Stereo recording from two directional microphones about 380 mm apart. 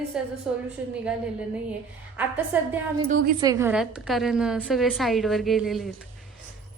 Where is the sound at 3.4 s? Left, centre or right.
Centre.